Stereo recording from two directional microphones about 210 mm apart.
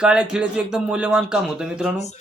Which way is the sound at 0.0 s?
5° right (ahead or behind).